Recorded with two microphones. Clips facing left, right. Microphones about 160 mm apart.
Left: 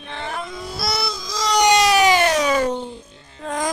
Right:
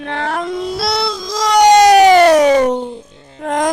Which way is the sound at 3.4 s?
75° right (ahead or behind).